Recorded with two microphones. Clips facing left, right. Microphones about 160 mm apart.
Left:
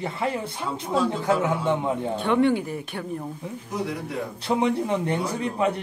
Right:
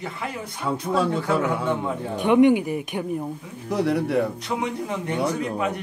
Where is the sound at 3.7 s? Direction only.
70° right (ahead or behind).